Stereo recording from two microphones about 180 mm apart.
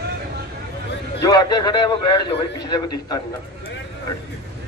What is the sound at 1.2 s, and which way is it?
A man's voice, 20° left (ahead or behind).